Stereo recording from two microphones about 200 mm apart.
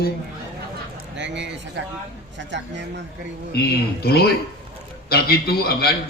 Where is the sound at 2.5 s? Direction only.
60° right (ahead or behind).